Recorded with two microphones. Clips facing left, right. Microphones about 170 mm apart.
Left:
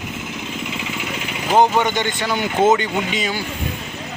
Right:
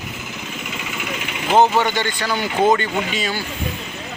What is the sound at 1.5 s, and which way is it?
Speech, 10° left (ahead or behind).